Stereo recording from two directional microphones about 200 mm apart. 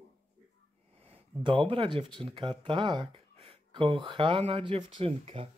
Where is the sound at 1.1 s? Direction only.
25° right (ahead or behind).